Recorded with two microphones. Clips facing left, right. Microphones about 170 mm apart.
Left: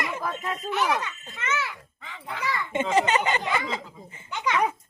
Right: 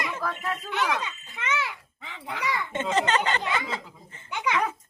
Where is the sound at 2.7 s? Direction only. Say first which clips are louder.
Left 3 dB; 10° left (ahead or behind).